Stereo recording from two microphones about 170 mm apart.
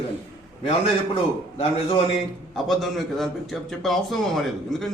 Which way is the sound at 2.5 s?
Centre (ahead or behind).